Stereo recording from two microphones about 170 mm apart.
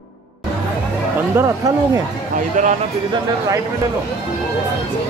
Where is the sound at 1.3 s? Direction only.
15° right (ahead or behind).